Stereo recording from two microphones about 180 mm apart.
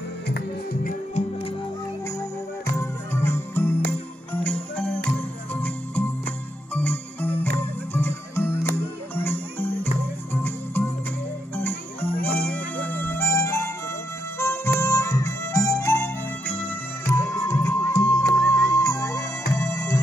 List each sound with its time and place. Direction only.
0.8 s music: 40° left (ahead or behind)
2.0 s music: 15° left (ahead or behind)
11.5 s jingle bell: 10° left (ahead or behind)
12.3 s harmonica: 10° left (ahead or behind)
14.8 s music: 15° left (ahead or behind)